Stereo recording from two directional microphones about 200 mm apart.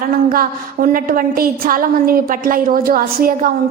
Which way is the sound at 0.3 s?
45° right (ahead or behind).